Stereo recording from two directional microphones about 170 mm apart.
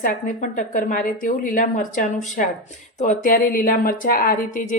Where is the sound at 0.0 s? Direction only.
50° left (ahead or behind).